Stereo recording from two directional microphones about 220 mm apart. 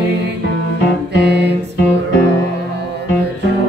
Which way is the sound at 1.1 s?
50° right (ahead or behind).